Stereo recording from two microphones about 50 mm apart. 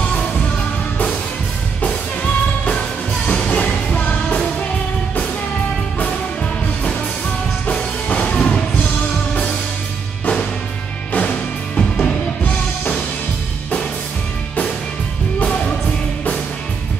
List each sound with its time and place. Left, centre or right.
0.0 s music: left
3.3 s music: left
8.1 s music: left
11.1 s music: left
15.4 s music: left